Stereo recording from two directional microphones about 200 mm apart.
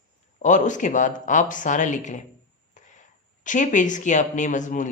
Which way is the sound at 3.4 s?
40° left (ahead or behind).